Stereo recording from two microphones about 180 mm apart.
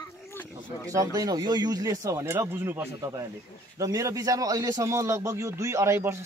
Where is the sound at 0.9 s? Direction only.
20° right (ahead or behind).